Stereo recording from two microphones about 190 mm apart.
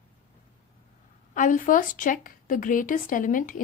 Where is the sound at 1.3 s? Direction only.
45° left (ahead or behind).